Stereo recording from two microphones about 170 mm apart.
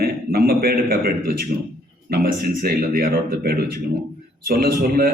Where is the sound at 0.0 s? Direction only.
65° right (ahead or behind).